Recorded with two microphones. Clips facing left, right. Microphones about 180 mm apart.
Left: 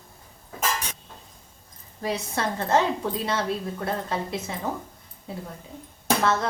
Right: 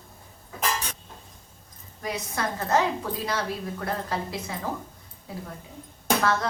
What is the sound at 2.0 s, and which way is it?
Speech, 30° left (ahead or behind).